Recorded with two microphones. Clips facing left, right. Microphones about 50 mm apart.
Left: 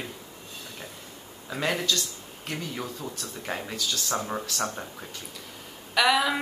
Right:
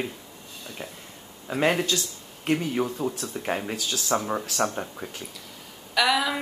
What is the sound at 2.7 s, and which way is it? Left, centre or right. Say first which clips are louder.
Speech: right 8 dB; right.